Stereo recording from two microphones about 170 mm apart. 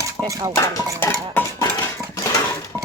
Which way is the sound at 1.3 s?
15° left (ahead or behind).